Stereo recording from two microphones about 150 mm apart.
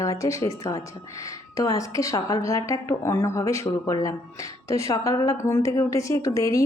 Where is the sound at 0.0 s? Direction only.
20° left (ahead or behind).